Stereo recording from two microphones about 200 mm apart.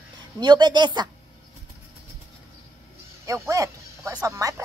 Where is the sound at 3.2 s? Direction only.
15° right (ahead or behind).